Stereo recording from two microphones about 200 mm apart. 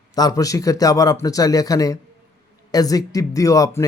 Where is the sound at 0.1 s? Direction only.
20° left (ahead or behind).